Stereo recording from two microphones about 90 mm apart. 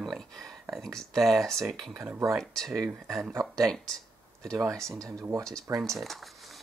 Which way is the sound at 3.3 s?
40° right (ahead or behind).